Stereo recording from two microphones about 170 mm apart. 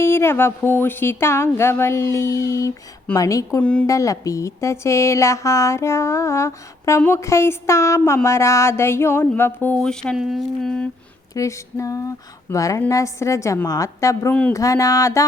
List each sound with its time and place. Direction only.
0.0 s speech: 15° left (ahead or behind)
3.6 s speech: 5° left (ahead or behind)
3.8 s speech: 20° left (ahead or behind); by 10.8 s 5° left (ahead or behind)
11.3 s speech: 15° left (ahead or behind)